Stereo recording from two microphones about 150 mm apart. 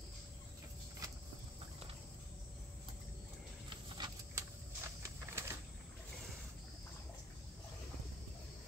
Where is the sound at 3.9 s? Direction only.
25° right (ahead or behind).